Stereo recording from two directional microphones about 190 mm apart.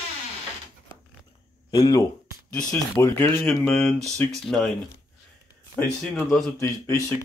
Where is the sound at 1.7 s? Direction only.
20° left (ahead or behind).